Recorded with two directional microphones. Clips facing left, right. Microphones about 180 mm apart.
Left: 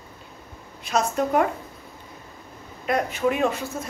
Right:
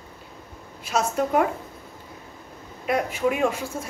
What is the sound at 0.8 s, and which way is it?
Speech, 5° right (ahead or behind).